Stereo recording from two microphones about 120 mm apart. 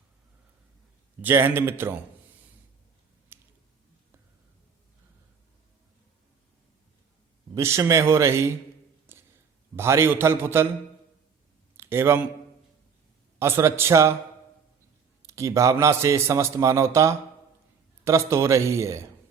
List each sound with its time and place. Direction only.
1.2 s a man's voice: 15° right (ahead or behind)
3.3 s a sound: 20° right (ahead or behind)
7.5 s a man's voice: 25° right (ahead or behind)
9.1 s a sound: 20° right (ahead or behind)
9.7 s a man's voice: 20° right (ahead or behind)
11.8 s a man's voice: 20° right (ahead or behind)
13.4 s a man's voice: 20° right (ahead or behind)
15.3 s a man's voice: 25° right (ahead or behind)